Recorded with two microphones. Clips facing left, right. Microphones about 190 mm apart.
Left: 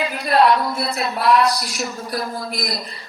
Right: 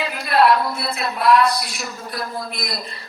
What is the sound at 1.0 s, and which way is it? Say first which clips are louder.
Speech: right 1 dB; centre (ahead or behind).